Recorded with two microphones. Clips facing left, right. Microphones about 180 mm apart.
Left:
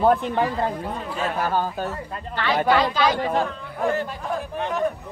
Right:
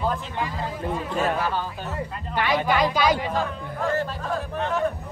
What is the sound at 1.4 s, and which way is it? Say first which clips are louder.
Speech: left 4 dB; 45° left (ahead or behind).